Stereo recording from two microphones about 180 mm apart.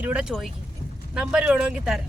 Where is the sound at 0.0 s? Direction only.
5° right (ahead or behind).